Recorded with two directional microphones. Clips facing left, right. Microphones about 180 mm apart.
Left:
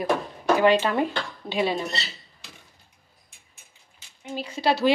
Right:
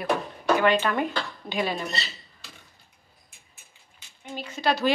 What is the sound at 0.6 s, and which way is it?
Speech, 30° left (ahead or behind).